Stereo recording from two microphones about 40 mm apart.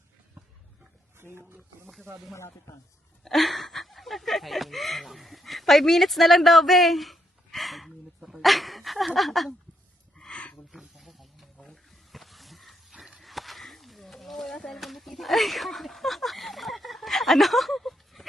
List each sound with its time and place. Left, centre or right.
1.1 s speech: right
3.2 s a sound: centre
10.3 s wild animals: left
10.7 s wild animals: centre
11.5 s roaring cats: centre
13.2 s a sound: centre